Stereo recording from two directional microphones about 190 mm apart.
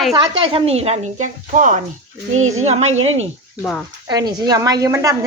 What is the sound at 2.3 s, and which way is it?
Speech, 90° right.